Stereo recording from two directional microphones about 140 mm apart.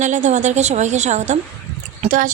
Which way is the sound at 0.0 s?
60° right (ahead or behind).